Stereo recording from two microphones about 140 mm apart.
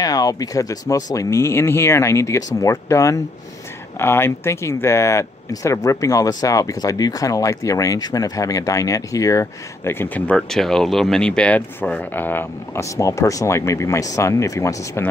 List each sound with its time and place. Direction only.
0.0 s speech: 25° left (ahead or behind)